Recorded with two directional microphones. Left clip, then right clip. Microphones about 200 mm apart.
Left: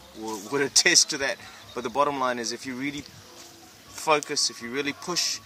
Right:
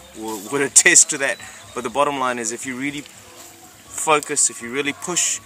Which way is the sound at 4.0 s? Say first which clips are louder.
Right 5 dB; centre (ahead or behind).